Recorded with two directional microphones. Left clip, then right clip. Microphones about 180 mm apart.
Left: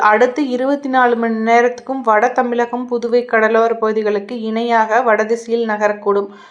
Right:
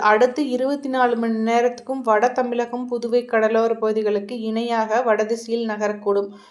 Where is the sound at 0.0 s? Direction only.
25° left (ahead or behind).